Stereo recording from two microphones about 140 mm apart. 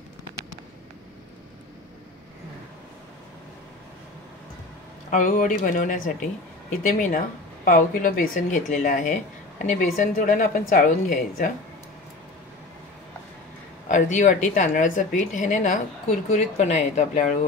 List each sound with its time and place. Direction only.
5.1 s a woman's voice: 65° left (ahead or behind); by 11.5 s 80° left
13.8 s a woman's voice: 60° left (ahead or behind)